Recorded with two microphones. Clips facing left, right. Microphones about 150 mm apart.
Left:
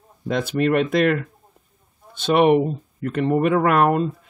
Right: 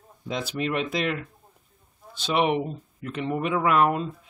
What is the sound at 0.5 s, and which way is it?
Speech, 50° left (ahead or behind).